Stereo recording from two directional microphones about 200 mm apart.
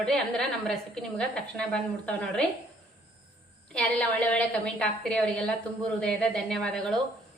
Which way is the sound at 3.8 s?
5° left (ahead or behind).